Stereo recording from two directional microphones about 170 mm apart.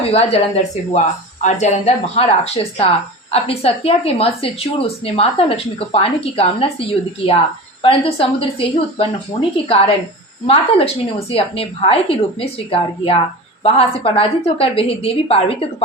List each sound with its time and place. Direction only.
0.0 s a woman's voice: 35° left (ahead or behind)